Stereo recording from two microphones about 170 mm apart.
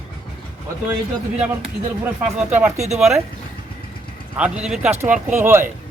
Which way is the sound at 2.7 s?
40° right (ahead or behind).